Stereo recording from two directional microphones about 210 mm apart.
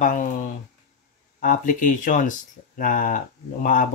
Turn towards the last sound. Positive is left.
turn(degrees=40)  # may be behind; listen again after turning